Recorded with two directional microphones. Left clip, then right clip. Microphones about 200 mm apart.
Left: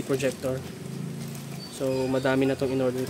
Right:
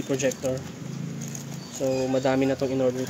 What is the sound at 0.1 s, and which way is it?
Speech, 10° left (ahead or behind).